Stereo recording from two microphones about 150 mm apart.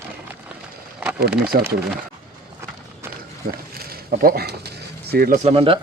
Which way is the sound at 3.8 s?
80° right.